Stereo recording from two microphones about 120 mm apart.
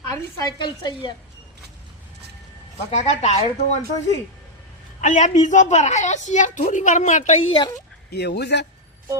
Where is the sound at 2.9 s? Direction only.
70° left (ahead or behind).